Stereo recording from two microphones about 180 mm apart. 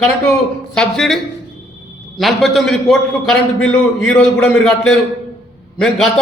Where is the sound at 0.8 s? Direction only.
Centre (ahead or behind).